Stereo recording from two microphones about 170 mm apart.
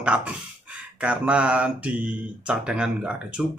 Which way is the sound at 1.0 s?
5° right (ahead or behind).